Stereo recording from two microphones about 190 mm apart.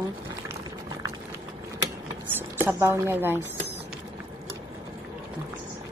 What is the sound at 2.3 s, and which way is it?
Speech, 10° right (ahead or behind).